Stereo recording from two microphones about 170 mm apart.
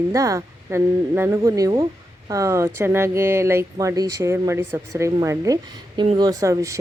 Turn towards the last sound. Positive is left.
turn(degrees=-20)  # may be behind; listen again after turning